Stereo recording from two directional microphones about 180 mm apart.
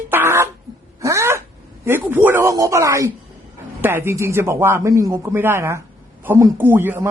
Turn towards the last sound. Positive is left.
turn(degrees=-10)  # may be behind; listen again after turning